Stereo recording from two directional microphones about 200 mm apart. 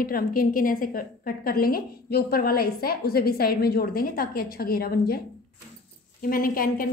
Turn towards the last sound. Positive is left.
turn(degrees=45)  # may be behind; listen again after turning